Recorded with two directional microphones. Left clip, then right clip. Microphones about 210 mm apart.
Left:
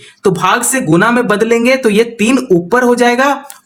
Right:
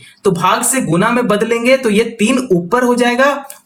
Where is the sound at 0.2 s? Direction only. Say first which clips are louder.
Left 2 dB; 30° left (ahead or behind).